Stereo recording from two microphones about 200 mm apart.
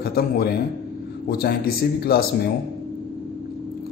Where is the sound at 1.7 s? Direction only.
50° left (ahead or behind).